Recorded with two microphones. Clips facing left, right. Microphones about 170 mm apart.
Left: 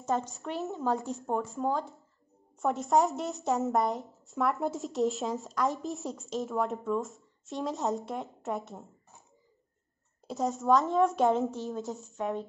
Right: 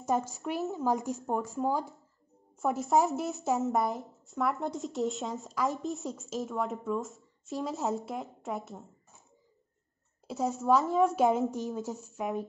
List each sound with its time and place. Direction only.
0.0 s a woman's voice: 10° right (ahead or behind)
10.2 s a woman's voice: centre (ahead or behind)
11.5 s a woman's voice: 15° right (ahead or behind)